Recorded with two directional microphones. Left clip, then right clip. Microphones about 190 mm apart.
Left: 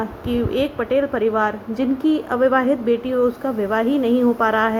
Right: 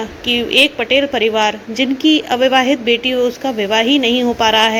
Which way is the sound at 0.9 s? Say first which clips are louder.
Right 5 dB; 25° left (ahead or behind).